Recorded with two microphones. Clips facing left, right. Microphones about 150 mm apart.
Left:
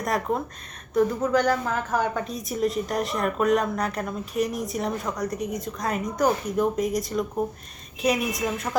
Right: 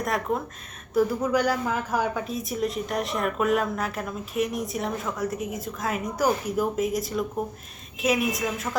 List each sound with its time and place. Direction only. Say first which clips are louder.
0.9 s a woman's voice: left 1 dB; 10° right (ahead or behind)